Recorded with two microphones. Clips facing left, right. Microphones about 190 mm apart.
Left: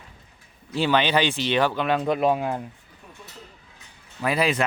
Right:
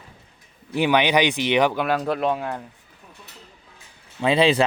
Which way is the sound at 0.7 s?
15° right (ahead or behind).